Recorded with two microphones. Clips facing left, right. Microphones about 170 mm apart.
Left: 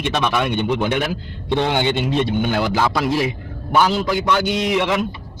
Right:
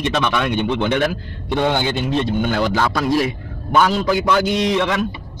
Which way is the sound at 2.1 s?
15° left (ahead or behind).